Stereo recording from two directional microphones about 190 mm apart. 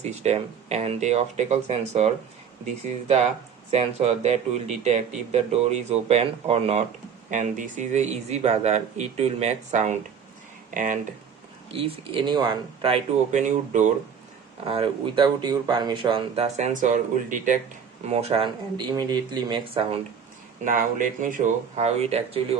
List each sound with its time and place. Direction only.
0.0 s speech: 35° right (ahead or behind)
11.7 s speech: 30° right (ahead or behind)
14.6 s speech: 30° right (ahead or behind)
18.1 s speech: 30° right (ahead or behind)
20.7 s speech: 45° right (ahead or behind)